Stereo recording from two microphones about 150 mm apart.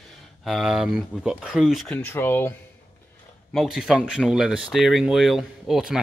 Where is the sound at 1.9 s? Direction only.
15° left (ahead or behind).